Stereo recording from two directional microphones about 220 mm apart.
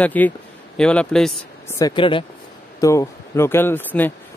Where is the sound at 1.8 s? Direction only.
20° left (ahead or behind).